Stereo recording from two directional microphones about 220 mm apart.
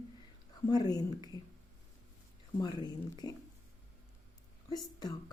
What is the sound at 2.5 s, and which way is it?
Speech, 20° left (ahead or behind).